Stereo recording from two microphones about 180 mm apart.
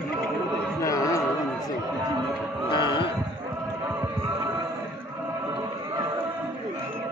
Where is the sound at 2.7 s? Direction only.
25° left (ahead or behind).